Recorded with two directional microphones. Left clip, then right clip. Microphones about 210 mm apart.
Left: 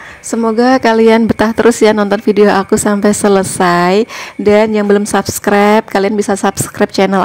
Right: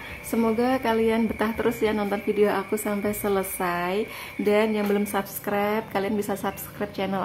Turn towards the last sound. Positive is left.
turn(degrees=50)  # may be behind; listen again after turning